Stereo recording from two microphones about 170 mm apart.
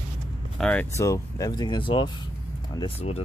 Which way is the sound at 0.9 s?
20° left (ahead or behind).